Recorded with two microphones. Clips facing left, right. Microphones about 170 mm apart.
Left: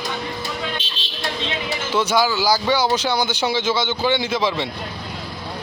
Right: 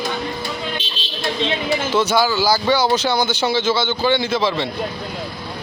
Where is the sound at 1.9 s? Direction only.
15° left (ahead or behind).